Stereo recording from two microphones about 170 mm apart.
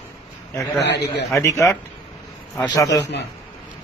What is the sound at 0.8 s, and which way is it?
Speech, 90° left.